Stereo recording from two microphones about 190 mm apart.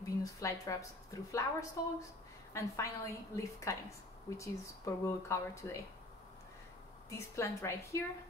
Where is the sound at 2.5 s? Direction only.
15° left (ahead or behind).